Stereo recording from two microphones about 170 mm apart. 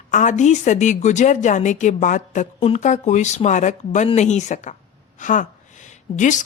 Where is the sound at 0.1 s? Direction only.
45° left (ahead or behind).